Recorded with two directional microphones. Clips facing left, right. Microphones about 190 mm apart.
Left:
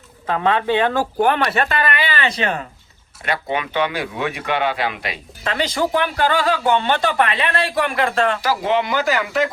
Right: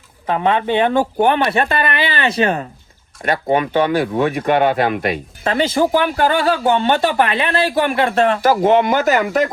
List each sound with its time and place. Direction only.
0.3 s speech: 20° right (ahead or behind); by 5.2 s 50° right (ahead or behind)
5.4 s speech: 30° right (ahead or behind)
8.4 s speech: 50° right (ahead or behind)